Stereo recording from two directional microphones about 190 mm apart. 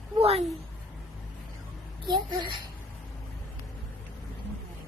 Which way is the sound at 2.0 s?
25° right (ahead or behind).